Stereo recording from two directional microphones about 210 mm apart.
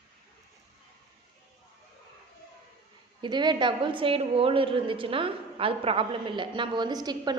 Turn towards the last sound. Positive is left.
turn(degrees=-20)  # may be behind; listen again after turning